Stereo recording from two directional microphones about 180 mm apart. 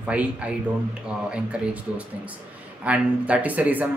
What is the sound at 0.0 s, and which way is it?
Speech, 10° right (ahead or behind).